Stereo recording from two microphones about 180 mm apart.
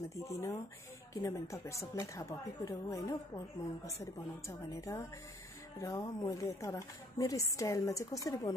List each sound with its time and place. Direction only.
0.1 s speech: 15° left (ahead or behind)